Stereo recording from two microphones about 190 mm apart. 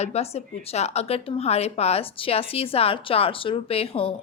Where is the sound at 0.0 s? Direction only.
35° left (ahead or behind).